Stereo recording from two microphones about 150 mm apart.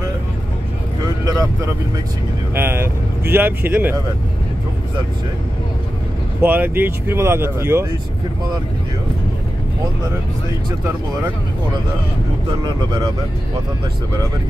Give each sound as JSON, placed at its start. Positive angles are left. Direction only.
{"t": 1.2, "sound": "vehicle", "side_deg": -20}
{"t": 2.5, "sound": "speech", "side_deg": -15}
{"t": 6.4, "sound": "speech", "side_deg": -15}
{"t": 12.4, "sound": "speech", "side_deg": -30}